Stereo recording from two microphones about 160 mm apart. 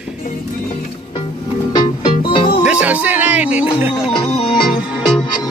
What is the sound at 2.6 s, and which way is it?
Music, 10° right (ahead or behind).